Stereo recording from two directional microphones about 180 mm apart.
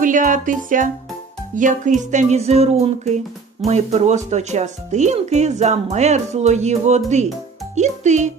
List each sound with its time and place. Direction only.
0.0 s music: 45° right (ahead or behind)
2.0 s speech: 45° right (ahead or behind)